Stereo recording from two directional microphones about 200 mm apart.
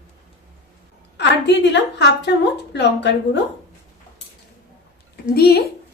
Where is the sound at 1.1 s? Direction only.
60° left (ahead or behind).